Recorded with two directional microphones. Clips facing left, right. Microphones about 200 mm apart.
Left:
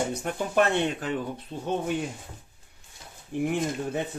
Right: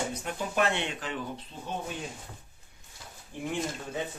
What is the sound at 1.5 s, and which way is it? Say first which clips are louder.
Speech: left 8 dB; 60° left (ahead or behind).